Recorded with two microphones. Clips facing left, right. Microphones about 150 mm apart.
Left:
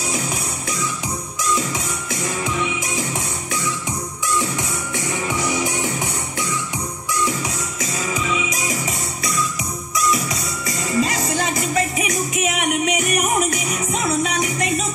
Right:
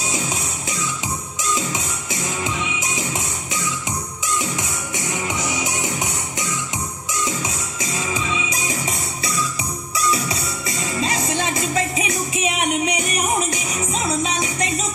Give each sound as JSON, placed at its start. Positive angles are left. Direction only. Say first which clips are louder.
{"t": 2.4, "sound": "music", "louder": "left 2 dB", "side_deg": -20}
{"t": 4.3, "sound": "music", "louder": "left 2 dB", "side_deg": -15}
{"t": 7.1, "sound": "music", "louder": "left 3 dB", "side_deg": -20}
{"t": 9.9, "sound": "music", "louder": "left 1 dB", "side_deg": -30}
{"t": 13.9, "sound": "music", "louder": "left 2 dB", "side_deg": -25}